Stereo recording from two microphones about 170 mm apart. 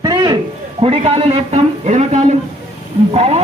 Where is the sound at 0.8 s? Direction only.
35° right (ahead or behind).